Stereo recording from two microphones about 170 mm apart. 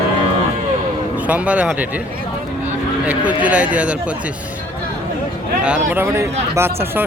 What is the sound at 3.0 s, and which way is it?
Speech, 10° right (ahead or behind).